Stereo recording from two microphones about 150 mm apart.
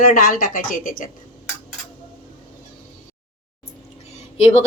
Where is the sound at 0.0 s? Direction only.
65° left (ahead or behind).